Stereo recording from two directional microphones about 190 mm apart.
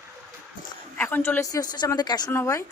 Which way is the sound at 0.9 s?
10° left (ahead or behind).